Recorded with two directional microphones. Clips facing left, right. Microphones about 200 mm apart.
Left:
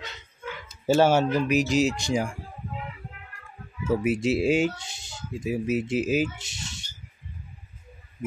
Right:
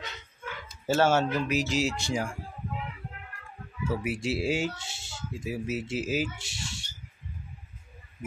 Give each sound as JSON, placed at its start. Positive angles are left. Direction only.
{"t": 0.8, "sound": "speech", "side_deg": 15}
{"t": 3.9, "sound": "speech", "side_deg": 20}